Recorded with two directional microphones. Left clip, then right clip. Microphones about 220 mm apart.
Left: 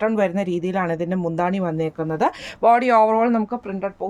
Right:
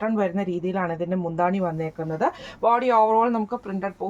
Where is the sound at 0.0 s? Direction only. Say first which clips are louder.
Left 4 dB; 50° left (ahead or behind).